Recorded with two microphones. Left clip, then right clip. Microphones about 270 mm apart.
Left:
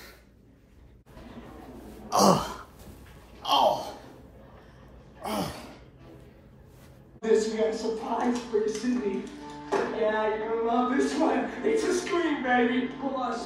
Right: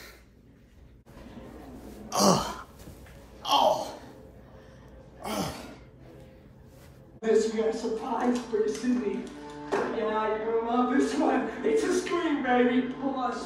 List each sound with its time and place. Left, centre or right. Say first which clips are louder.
2.0 s a sound: left 2 dB; centre
5.2 s gasp: left 1 dB; centre
7.2 s speech: left 1 dB; centre